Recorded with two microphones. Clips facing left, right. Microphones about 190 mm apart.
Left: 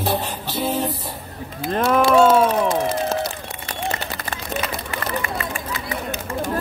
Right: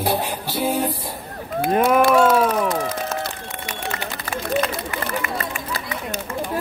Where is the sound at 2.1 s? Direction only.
25° left (ahead or behind).